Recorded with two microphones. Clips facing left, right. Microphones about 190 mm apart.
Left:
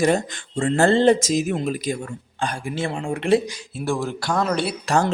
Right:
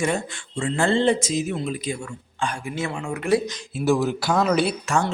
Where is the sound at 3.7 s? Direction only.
5° right (ahead or behind).